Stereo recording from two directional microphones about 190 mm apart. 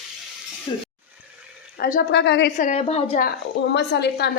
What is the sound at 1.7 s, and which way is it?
Speech, 50° left (ahead or behind).